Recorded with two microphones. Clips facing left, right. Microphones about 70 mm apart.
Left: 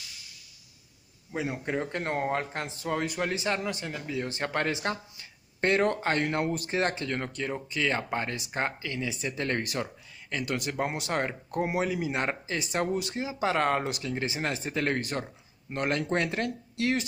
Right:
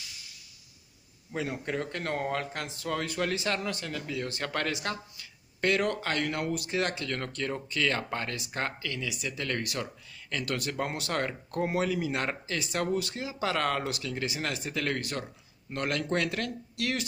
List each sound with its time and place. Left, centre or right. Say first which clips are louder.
1.3 s speech: left 2 dB; centre